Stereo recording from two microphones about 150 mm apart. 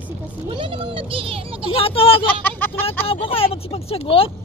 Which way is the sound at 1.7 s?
40° left (ahead or behind).